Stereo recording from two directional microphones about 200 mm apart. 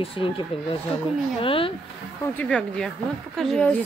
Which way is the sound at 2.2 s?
5° left (ahead or behind).